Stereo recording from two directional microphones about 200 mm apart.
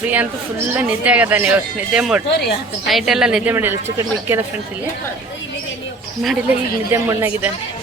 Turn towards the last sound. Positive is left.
turn(degrees=-15)  # may be behind; listen again after turning